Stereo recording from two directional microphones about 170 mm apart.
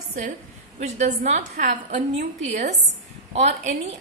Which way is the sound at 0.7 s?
45° right (ahead or behind).